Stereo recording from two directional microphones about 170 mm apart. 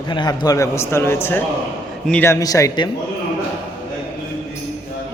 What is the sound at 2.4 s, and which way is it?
Speech, 20° left (ahead or behind).